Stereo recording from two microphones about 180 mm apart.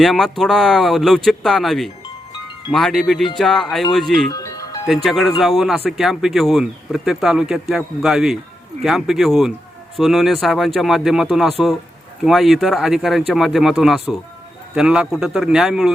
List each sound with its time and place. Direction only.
0.0 s speech: centre (ahead or behind)
4.3 s music: 20° left (ahead or behind)
4.9 s speech: centre (ahead or behind)